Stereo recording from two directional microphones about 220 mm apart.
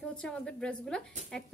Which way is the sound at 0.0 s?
5° left (ahead or behind).